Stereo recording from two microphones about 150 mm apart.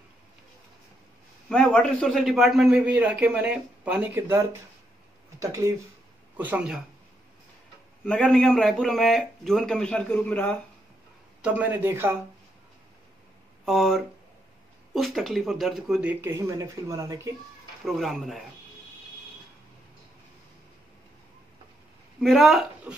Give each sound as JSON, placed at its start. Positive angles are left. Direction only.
{"t": 1.5, "sound": "a man's voice", "side_deg": 5}
{"t": 8.0, "sound": "a man's voice", "side_deg": 5}
{"t": 11.4, "sound": "a man's voice", "side_deg": -10}
{"t": 13.7, "sound": "a man's voice", "side_deg": 0}
{"t": 17.8, "sound": "a man's voice", "side_deg": 0}
{"t": 22.2, "sound": "a man's voice", "side_deg": 0}